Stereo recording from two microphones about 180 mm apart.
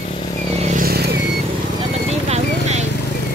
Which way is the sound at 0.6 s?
50° right (ahead or behind).